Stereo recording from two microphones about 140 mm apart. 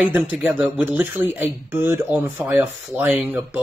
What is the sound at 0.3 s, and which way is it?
Speech, 10° right (ahead or behind).